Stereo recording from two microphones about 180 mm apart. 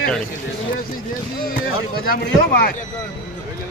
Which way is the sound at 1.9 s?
55° left (ahead or behind).